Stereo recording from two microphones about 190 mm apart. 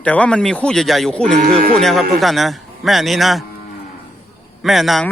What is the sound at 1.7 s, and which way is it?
Speech, centre (ahead or behind).